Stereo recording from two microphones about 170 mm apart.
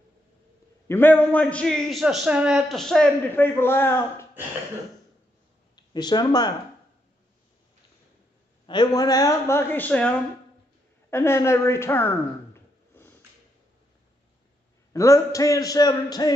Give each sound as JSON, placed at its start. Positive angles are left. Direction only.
{"t": 0.8, "sound": "a man's voice", "side_deg": 10}
{"t": 5.8, "sound": "speech", "side_deg": 25}
{"t": 8.6, "sound": "a man's voice", "side_deg": 25}
{"t": 11.1, "sound": "a sound", "side_deg": 15}
{"t": 14.9, "sound": "a man's voice", "side_deg": 20}